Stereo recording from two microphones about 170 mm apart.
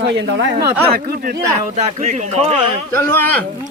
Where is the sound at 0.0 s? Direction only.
85° right.